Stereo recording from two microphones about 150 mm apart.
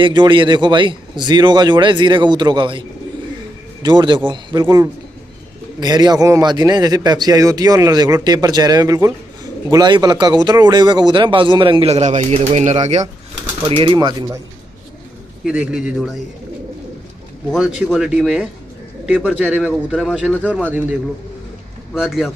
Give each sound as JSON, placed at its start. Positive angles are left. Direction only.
{"t": 0.0, "sound": "speech", "side_deg": -30}
{"t": 3.8, "sound": "a man's voice", "side_deg": -30}
{"t": 13.7, "sound": "speech", "side_deg": -30}
{"t": 15.4, "sound": "a man's voice", "side_deg": -5}
{"t": 17.5, "sound": "a man's voice", "side_deg": -5}
{"t": 19.7, "sound": "a man's voice", "side_deg": 5}
{"t": 21.9, "sound": "a man's voice", "side_deg": -5}